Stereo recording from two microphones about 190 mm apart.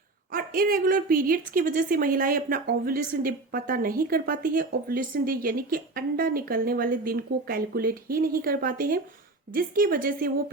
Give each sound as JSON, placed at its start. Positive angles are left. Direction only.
{"t": 0.3, "sound": "a woman's voice", "side_deg": -50}